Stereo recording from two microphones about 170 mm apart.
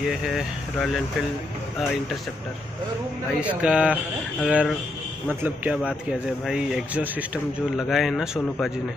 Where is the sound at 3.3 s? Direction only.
5° right (ahead or behind).